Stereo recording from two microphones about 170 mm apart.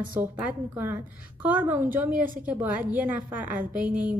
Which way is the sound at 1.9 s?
50° right (ahead or behind).